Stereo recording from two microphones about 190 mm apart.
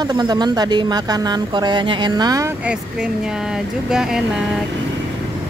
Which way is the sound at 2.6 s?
5° right (ahead or behind).